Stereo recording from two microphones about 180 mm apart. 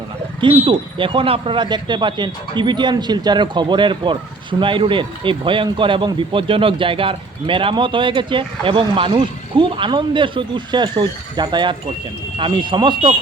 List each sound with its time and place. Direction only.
0.4 s speech: 30° right (ahead or behind)